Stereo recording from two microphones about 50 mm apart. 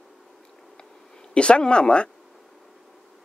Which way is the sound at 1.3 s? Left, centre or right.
Left.